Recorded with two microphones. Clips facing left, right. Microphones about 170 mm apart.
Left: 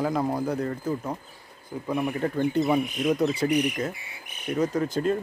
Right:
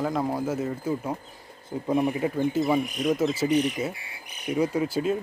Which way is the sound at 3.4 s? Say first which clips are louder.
Right 2 dB; 10° left (ahead or behind).